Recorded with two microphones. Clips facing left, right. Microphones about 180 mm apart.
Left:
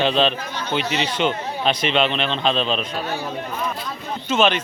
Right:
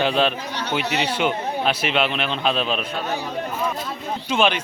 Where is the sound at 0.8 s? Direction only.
65° right (ahead or behind).